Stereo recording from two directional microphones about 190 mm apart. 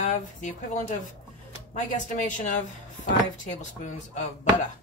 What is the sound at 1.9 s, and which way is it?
A woman's voice, 40° left (ahead or behind).